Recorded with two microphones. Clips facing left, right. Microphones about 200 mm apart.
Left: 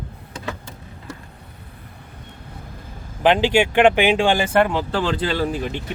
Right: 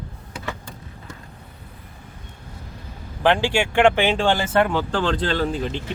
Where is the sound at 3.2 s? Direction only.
20° left (ahead or behind).